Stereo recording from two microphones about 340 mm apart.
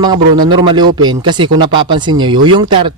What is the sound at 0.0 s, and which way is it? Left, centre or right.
Speech, centre.